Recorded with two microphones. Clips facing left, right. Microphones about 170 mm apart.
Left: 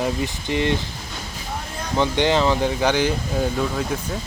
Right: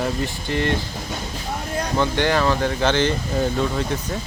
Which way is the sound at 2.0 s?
20° left (ahead or behind).